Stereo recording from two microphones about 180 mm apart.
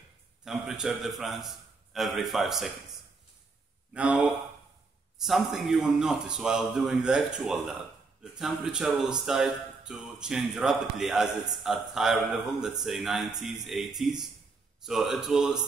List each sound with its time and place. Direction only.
0.5 s speech: 5° right (ahead or behind)
3.9 s speech: 5° right (ahead or behind)